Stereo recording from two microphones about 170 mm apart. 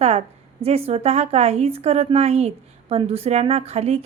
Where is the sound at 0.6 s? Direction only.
35° right (ahead or behind).